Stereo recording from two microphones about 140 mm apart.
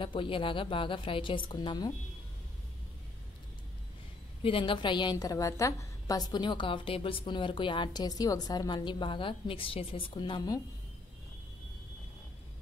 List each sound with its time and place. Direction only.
0.0 s a woman's voice: 35° left (ahead or behind)
4.4 s a woman's voice: 40° left (ahead or behind)